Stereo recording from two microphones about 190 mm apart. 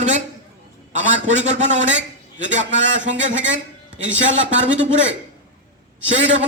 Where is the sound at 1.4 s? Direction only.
40° right (ahead or behind).